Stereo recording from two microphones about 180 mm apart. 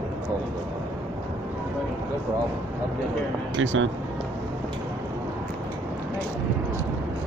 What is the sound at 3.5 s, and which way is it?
Speech, 90° right.